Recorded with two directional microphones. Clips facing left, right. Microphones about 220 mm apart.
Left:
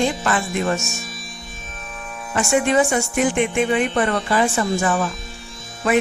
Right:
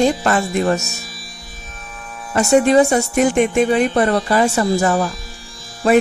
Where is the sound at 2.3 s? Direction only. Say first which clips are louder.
Right 6 dB; 40° right (ahead or behind).